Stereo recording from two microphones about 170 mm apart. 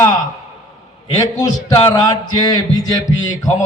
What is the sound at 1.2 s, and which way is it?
Mantra, 20° left (ahead or behind).